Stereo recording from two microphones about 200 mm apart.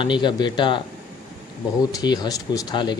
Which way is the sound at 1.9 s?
20° left (ahead or behind).